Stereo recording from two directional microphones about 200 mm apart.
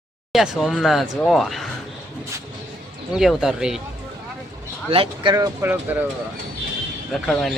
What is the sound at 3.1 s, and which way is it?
Speech, 5° right (ahead or behind).